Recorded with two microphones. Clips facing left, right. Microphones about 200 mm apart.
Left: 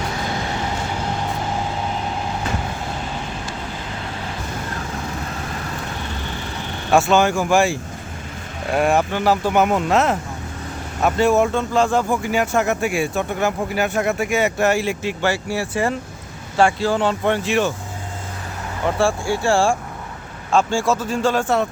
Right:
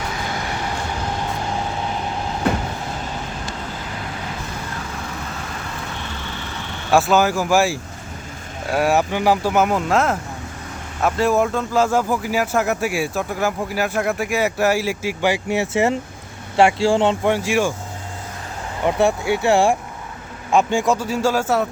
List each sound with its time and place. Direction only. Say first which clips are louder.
2.5 s train: right 8 dB; 60° right (ahead or behind)
6.9 s speech: even; centre (ahead or behind); by 17.2 s 25° right (ahead or behind)
17.2 s a man's voice: even; 10° right (ahead or behind)
18.9 s a man's voice: right 2 dB; 20° right (ahead or behind)